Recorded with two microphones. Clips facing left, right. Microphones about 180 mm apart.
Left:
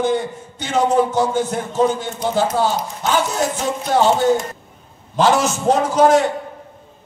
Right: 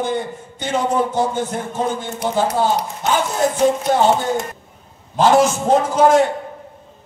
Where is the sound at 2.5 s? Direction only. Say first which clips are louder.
Right 1 dB; 70° right (ahead or behind).